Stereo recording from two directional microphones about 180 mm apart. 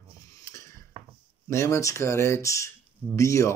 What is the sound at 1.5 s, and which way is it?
Speech, 15° left (ahead or behind).